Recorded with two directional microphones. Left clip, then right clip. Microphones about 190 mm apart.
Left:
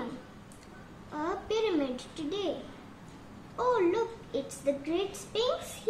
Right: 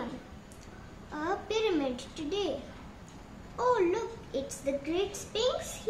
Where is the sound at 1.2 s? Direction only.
20° left (ahead or behind).